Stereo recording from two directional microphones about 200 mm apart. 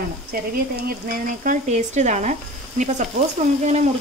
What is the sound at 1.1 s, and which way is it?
Speech, 40° right (ahead or behind).